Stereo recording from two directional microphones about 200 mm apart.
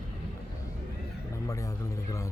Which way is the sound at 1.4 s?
15° left (ahead or behind).